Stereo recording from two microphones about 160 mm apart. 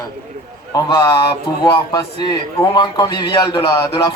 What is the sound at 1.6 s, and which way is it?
Speech, 30° left (ahead or behind).